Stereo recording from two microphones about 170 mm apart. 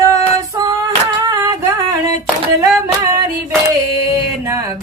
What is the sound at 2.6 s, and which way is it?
Female singing, 20° right (ahead or behind).